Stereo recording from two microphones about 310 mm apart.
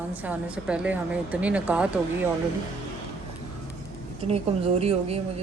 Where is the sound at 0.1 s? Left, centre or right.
Centre.